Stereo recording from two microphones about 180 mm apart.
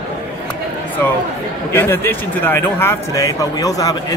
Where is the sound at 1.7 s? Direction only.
10° left (ahead or behind).